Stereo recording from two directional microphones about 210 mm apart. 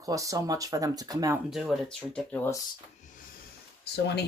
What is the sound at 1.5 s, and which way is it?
Speech, centre (ahead or behind).